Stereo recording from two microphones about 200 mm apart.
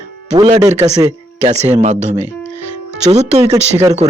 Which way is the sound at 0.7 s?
35° right (ahead or behind).